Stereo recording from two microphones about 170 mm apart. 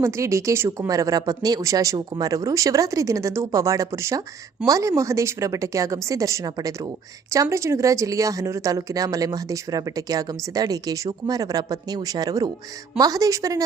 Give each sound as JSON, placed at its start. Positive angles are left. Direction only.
{"t": 0.0, "sound": "a woman's voice", "side_deg": -15}